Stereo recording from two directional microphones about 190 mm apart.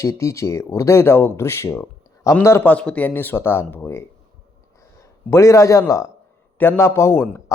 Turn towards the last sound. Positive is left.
turn(degrees=15)  # may be behind; listen again after turning